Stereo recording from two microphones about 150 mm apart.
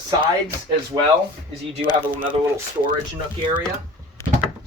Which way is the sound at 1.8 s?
35° right (ahead or behind).